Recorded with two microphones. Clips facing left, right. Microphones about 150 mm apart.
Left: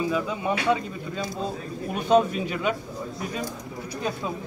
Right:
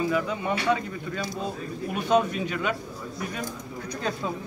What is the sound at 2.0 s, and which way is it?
Speech, 10° left (ahead or behind).